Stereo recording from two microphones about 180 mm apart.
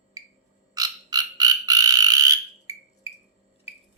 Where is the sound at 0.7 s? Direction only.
20° right (ahead or behind).